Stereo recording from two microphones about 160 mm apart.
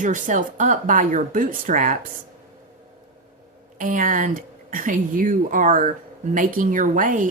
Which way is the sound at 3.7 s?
60° right (ahead or behind).